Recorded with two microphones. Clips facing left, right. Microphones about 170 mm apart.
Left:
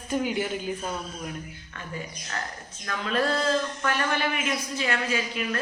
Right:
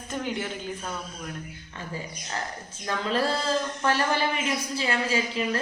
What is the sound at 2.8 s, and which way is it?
A woman's voice, 30° right (ahead or behind).